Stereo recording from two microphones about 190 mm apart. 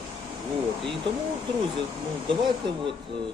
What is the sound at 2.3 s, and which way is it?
Speech, 25° right (ahead or behind).